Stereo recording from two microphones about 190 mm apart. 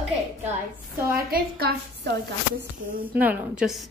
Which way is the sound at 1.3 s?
60° right (ahead or behind).